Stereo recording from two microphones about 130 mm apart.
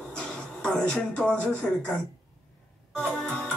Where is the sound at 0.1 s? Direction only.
5° left (ahead or behind).